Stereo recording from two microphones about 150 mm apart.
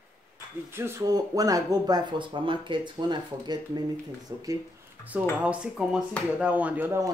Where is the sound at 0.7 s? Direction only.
15° right (ahead or behind).